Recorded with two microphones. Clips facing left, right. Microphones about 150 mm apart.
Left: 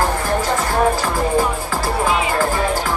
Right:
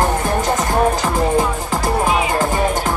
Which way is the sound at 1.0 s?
20° right (ahead or behind).